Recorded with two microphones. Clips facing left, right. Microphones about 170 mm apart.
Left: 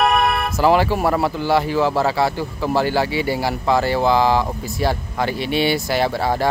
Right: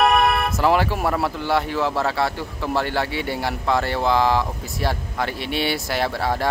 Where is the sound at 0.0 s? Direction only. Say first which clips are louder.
Even; centre (ahead or behind).